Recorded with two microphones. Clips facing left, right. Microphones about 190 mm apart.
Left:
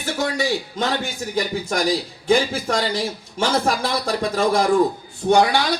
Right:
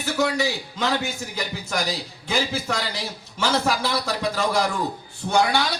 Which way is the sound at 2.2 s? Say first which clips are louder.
Left 6 dB; 50° left (ahead or behind).